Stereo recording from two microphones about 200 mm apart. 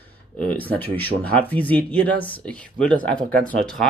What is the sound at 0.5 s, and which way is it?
Speech, 10° left (ahead or behind).